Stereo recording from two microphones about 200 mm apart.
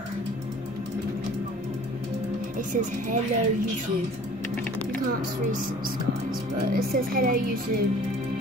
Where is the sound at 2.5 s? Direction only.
40° right (ahead or behind).